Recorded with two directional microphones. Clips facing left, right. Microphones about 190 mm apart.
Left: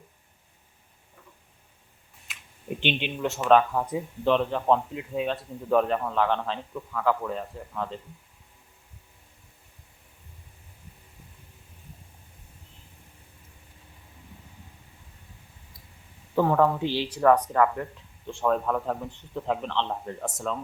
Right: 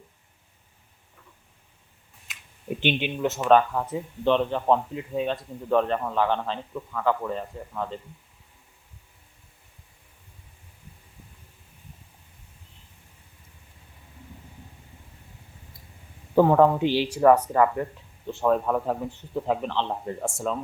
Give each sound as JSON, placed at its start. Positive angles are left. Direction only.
{"t": 2.2, "sound": "a man's voice", "side_deg": 0}
{"t": 16.4, "sound": "speech", "side_deg": -30}
{"t": 16.8, "sound": "a man's voice", "side_deg": -15}